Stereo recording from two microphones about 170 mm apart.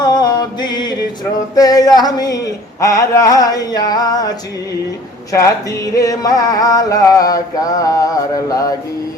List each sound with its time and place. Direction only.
0.0 s music: 25° left (ahead or behind)
5.3 s music: 20° left (ahead or behind)